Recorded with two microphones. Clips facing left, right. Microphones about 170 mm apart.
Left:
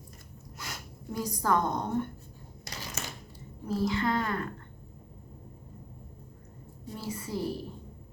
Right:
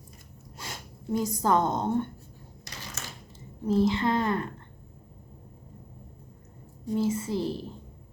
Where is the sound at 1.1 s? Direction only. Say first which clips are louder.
Right 4 dB; 25° right (ahead or behind).